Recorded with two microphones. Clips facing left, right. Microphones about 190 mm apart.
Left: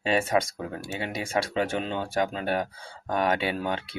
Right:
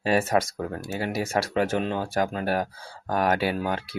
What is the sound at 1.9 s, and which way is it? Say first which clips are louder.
Speech: right 1 dB; centre (ahead or behind).